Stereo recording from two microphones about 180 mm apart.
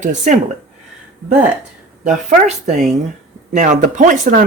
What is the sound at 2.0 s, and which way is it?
Speech, 40° right (ahead or behind).